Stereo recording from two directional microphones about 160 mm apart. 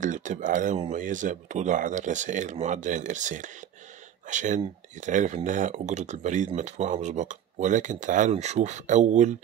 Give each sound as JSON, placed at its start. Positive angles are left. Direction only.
{"t": 0.0, "sound": "speech", "side_deg": -50}